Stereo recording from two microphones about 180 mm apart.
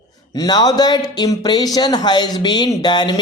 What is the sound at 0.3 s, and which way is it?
Speech, 20° left (ahead or behind).